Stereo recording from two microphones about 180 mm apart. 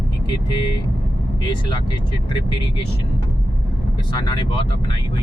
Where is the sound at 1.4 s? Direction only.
25° left (ahead or behind).